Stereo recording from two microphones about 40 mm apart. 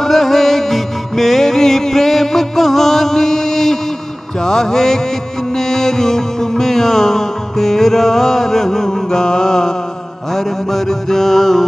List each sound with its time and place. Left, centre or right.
0.0 s music: centre
4.4 s mantra: centre
5.6 s music: centre
10.3 s mantra: centre